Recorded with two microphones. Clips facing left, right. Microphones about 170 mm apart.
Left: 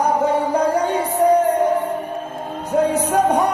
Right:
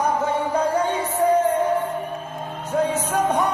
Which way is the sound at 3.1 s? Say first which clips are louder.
Left 5 dB; 35° left (ahead or behind).